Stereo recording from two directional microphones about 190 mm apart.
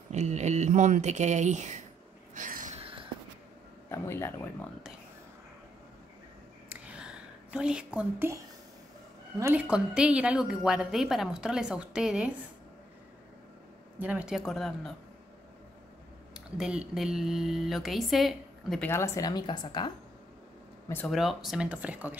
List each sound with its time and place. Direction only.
0.1 s speech: 35° right (ahead or behind)
2.3 s a sound: 40° right (ahead or behind)
3.9 s speech: 15° left (ahead or behind)
6.7 s a sound: 5° right (ahead or behind)
9.4 s a woman's voice: 10° right (ahead or behind)
13.9 s a woman's voice: 10° right (ahead or behind)
16.3 s a woman's voice: 5° right (ahead or behind)
18.9 s a woman's voice: 15° left (ahead or behind)
21.1 s a woman's voice: centre (ahead or behind)